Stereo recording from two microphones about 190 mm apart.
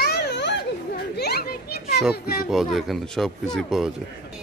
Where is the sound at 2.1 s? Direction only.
50° left (ahead or behind).